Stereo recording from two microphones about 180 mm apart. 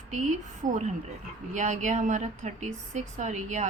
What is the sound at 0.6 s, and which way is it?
Speech, 45° right (ahead or behind).